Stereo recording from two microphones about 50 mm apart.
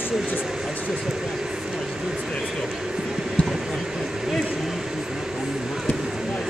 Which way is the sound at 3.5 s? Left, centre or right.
Centre.